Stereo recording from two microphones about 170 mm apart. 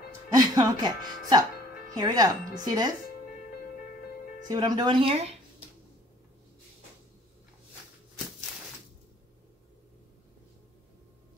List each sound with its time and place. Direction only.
0.3 s speech: 20° right (ahead or behind)
2.0 s speech: 25° right (ahead or behind)
4.5 s speech: 25° right (ahead or behind)